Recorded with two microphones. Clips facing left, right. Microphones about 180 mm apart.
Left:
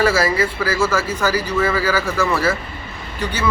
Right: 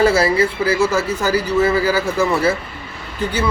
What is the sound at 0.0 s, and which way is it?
Speech, 30° right (ahead or behind).